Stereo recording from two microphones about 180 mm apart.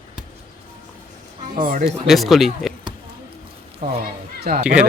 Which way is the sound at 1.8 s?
Centre (ahead or behind).